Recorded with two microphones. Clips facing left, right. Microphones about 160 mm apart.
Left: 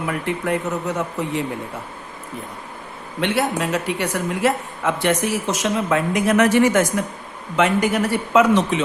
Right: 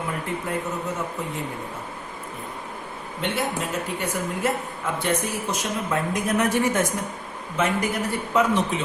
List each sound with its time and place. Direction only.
0.1 s speech: 75° left (ahead or behind)
3.2 s a woman's voice: 80° left